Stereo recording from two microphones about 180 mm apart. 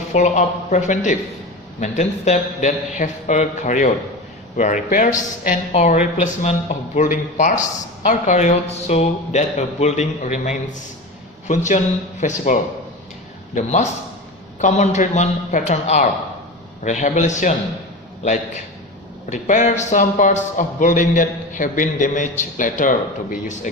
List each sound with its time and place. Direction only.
0.1 s a man's voice: 40° left (ahead or behind)
13.6 s a man's voice: 40° left (ahead or behind)